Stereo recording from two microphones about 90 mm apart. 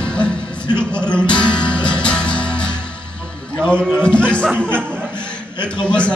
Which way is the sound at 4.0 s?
10° left (ahead or behind).